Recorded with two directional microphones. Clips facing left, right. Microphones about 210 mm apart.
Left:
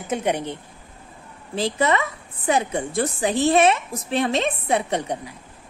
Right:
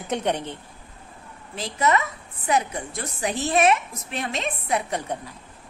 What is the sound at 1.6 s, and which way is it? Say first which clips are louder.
A woman's voice: left 2 dB; 30° left (ahead or behind).